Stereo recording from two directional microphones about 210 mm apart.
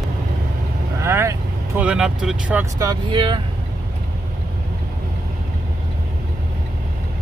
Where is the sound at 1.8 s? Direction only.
5° right (ahead or behind).